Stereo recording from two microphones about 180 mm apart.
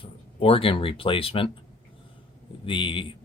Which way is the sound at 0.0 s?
30° left (ahead or behind).